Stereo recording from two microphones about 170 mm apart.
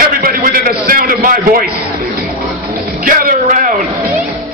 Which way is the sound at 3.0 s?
55° right (ahead or behind).